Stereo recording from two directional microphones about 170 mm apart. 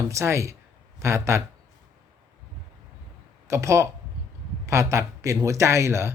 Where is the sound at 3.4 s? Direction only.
15° right (ahead or behind).